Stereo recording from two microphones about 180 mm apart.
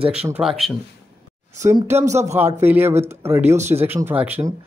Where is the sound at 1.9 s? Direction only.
15° right (ahead or behind).